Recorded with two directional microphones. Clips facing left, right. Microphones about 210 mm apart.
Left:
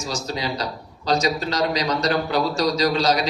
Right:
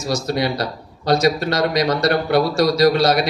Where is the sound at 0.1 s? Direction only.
60° right (ahead or behind).